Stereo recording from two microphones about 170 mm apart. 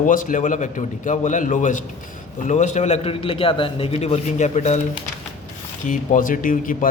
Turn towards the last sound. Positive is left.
turn(degrees=55)  # may be behind; listen again after turning